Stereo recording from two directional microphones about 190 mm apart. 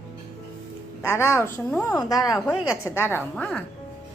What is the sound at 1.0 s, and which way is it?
A woman's voice, 15° left (ahead or behind).